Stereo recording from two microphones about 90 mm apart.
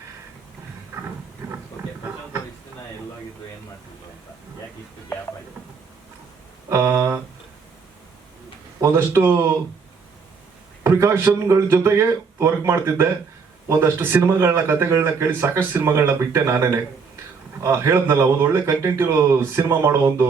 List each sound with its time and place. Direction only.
1.8 s a sound: 30° right (ahead or behind)
6.7 s speech: 30° right (ahead or behind)
8.8 s speech: 30° right (ahead or behind)
10.8 s speech: 30° right (ahead or behind)